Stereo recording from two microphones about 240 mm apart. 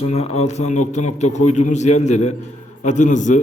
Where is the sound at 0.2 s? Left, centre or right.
Left.